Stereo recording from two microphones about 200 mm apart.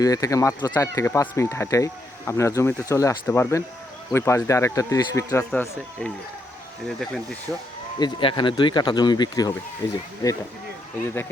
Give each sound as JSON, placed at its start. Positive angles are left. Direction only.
{"t": 0.0, "sound": "speech", "side_deg": 15}
{"t": 5.5, "sound": "speech", "side_deg": 5}
{"t": 7.9, "sound": "speech", "side_deg": 25}